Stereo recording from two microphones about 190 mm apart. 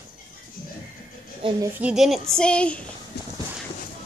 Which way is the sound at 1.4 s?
25° right (ahead or behind).